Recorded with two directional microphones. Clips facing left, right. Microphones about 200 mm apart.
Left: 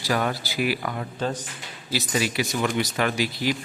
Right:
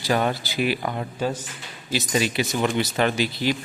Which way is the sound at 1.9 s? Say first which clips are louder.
Right 2 dB; 25° right (ahead or behind).